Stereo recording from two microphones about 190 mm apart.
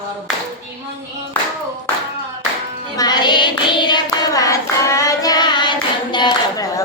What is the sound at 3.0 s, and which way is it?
Hands, 20° left (ahead or behind).